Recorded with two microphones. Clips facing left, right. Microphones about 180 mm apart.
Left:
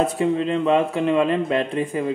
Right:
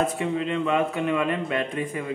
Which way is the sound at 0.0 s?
35° left (ahead or behind).